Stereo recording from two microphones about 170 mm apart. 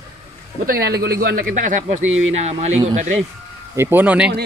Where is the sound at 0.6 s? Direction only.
65° right (ahead or behind); by 3.1 s 40° right (ahead or behind).